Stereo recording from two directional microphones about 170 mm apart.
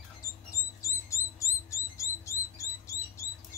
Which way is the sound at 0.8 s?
20° left (ahead or behind).